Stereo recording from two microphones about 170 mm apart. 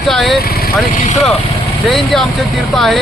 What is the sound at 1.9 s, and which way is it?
A man's voice, centre (ahead or behind).